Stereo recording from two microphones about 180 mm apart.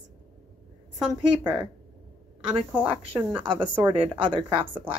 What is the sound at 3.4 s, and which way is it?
A woman's voice, 25° right (ahead or behind).